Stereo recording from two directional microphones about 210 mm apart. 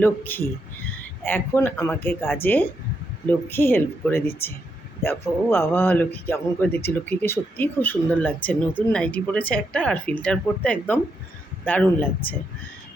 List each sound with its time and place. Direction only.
0.0 s speech: 10° left (ahead or behind)